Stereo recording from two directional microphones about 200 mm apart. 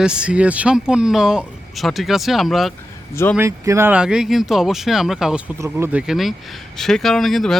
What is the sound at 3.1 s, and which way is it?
Speech, 10° left (ahead or behind).